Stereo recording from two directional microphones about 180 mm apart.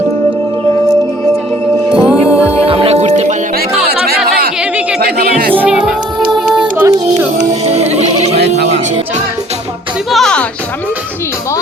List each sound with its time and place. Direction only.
2.0 s music: 5° right (ahead or behind)
2.6 s music: 30° right (ahead or behind)
3.8 s music: 60° right (ahead or behind)
5.5 s music: 5° right (ahead or behind)
7.3 s music: 35° right (ahead or behind)
10.1 s music: centre (ahead or behind)